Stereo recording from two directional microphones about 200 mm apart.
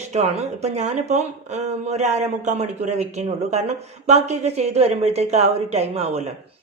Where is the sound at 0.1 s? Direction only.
35° right (ahead or behind).